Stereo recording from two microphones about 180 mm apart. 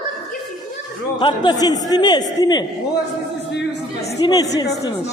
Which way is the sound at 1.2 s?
25° left (ahead or behind).